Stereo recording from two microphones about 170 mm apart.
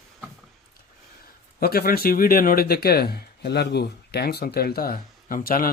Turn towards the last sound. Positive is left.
turn(degrees=55)  # may be behind; listen again after turning